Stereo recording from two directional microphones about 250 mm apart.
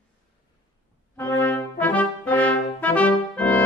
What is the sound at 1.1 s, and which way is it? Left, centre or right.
Brass instrument, centre.